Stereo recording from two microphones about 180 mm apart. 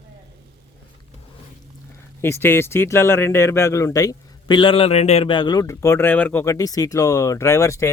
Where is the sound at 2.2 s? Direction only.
10° left (ahead or behind).